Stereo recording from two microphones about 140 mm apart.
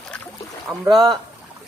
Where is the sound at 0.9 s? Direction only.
Centre (ahead or behind).